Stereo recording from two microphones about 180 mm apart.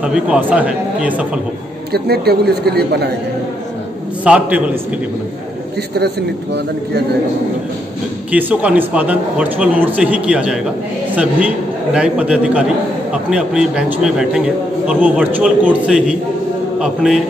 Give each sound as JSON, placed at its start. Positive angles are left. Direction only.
{"t": 0.0, "sound": "a man's voice", "side_deg": -5}
{"t": 1.9, "sound": "a man's voice", "side_deg": -60}
{"t": 4.2, "sound": "a man's voice", "side_deg": -5}
{"t": 5.9, "sound": "a man's voice", "side_deg": -65}
{"t": 8.3, "sound": "a man's voice", "side_deg": -10}